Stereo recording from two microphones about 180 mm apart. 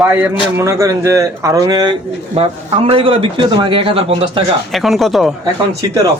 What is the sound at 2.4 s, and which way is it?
A man's voice, 35° right (ahead or behind).